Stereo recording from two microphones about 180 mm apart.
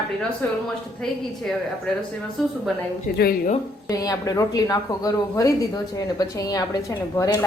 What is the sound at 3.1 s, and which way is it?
Speech, 55° left (ahead or behind).